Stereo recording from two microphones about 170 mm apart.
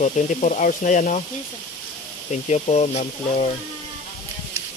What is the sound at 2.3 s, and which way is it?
Speech, 40° left (ahead or behind).